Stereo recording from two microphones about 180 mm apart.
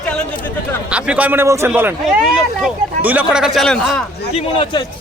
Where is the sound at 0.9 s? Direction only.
5° right (ahead or behind).